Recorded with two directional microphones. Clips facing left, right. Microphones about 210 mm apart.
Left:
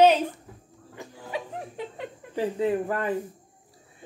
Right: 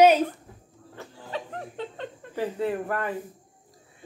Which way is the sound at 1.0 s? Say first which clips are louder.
Left 1 dB; 10° left (ahead or behind).